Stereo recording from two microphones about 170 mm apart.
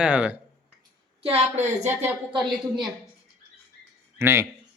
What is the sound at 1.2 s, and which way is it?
Speech, 40° right (ahead or behind).